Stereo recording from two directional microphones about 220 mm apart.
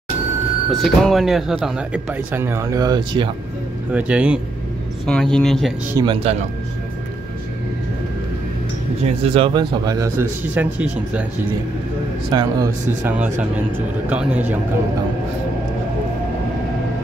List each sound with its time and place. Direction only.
0.7 s speech: centre (ahead or behind); by 3.3 s 20° right (ahead or behind)
3.9 s speech: 5° right (ahead or behind)
5.9 s speech: 20° right (ahead or behind)
9.0 s speech: 25° right (ahead or behind); by 11.2 s 5° right (ahead or behind)
12.3 s speech: 15° right (ahead or behind)